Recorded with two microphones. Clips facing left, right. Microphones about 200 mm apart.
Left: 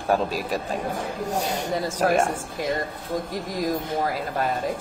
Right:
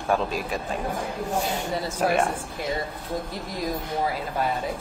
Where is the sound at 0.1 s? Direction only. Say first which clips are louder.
Left 2 dB; 40° left (ahead or behind).